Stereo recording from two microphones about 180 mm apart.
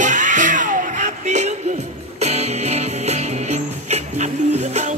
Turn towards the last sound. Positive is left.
turn(degrees=-40)  # may be behind; listen again after turning